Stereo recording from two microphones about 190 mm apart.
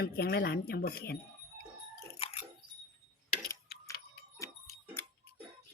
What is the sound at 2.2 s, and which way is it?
Squish, 30° left (ahead or behind).